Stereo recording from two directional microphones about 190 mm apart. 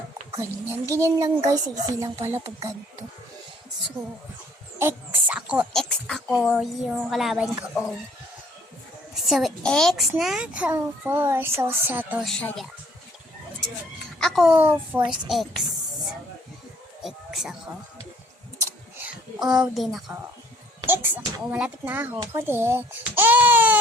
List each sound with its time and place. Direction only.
0.7 s a child's voice: 15° right (ahead or behind)
4.8 s speech: 15° right (ahead or behind)
9.1 s a child's voice: centre (ahead or behind)
12.2 s speech: 5° left (ahead or behind)
14.2 s a child's voice: centre (ahead or behind)
15.3 s speech: centre (ahead or behind)
17.0 s a sound: centre (ahead or behind)
18.6 s a sound: 10° right (ahead or behind)
20.8 s a child's voice: 10° right (ahead or behind)